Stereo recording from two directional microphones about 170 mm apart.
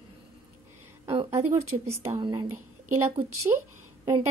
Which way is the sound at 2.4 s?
15° right (ahead or behind).